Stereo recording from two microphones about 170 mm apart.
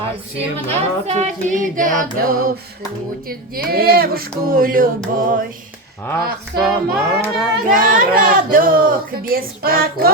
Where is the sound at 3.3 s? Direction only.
60° right (ahead or behind).